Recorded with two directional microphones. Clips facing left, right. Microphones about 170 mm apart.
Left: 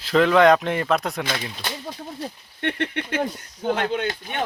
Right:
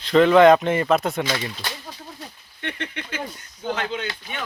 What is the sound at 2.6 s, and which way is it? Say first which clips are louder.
Speech: left 6 dB; 55° left (ahead or behind).